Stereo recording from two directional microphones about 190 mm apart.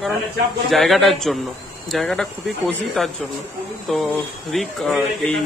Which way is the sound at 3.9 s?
Centre (ahead or behind).